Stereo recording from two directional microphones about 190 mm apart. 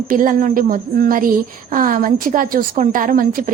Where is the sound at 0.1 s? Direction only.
45° right (ahead or behind).